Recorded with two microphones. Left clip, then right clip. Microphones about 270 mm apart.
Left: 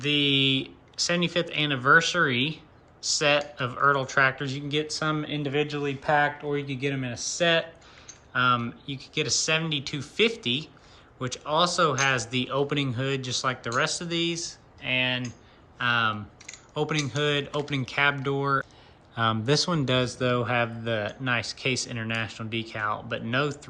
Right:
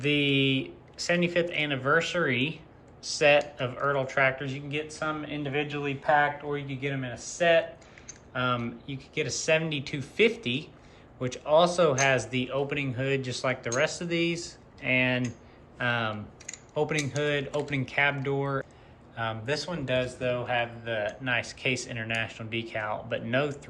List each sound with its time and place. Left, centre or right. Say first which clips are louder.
0.0 s speech: left 2 dB; centre